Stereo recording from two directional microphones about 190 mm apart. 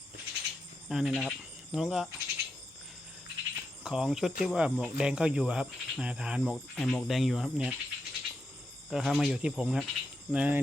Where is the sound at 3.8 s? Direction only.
5° right (ahead or behind).